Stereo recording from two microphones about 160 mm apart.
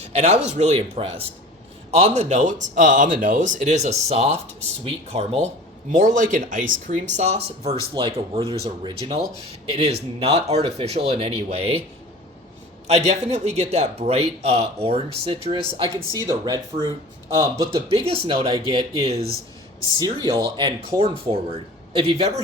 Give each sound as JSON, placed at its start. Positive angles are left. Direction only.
{"t": 0.0, "sound": "a man's voice", "side_deg": -40}
{"t": 5.9, "sound": "speech", "side_deg": -50}
{"t": 7.1, "sound": "a man's voice", "side_deg": -45}
{"t": 8.9, "sound": "speech", "side_deg": -25}
{"t": 9.7, "sound": "a man's voice", "side_deg": -40}
{"t": 12.9, "sound": "a man's voice", "side_deg": -40}
{"t": 17.9, "sound": "a man's voice", "side_deg": -35}